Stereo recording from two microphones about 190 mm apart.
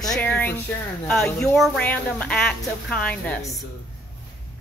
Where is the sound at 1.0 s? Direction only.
5° left (ahead or behind).